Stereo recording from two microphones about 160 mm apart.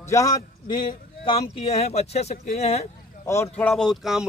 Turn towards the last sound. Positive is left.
turn(degrees=0)  # may be behind; listen again after turning